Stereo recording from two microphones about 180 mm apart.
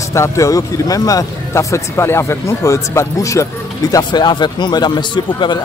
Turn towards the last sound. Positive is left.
turn(degrees=25)  # may be behind; listen again after turning